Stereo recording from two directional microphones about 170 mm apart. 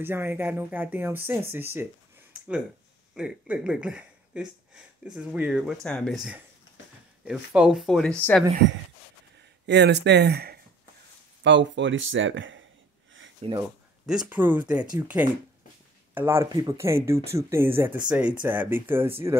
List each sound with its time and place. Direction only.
0.0 s speech: 15° right (ahead or behind)
3.2 s speech: 5° right (ahead or behind)
9.7 s speech: 85° right; by 10.6 s 70° right (ahead or behind)
11.4 s speech: 90° right
13.4 s speech: 35° right (ahead or behind)
14.0 s speech: 5° right (ahead or behind)